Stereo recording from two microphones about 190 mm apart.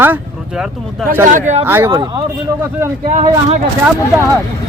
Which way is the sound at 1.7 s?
10° right (ahead or behind).